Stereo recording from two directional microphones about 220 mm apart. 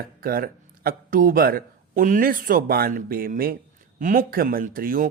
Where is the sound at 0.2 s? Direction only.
40° right (ahead or behind).